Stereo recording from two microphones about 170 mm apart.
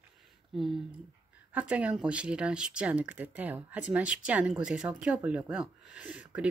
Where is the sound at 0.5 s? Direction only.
Centre (ahead or behind).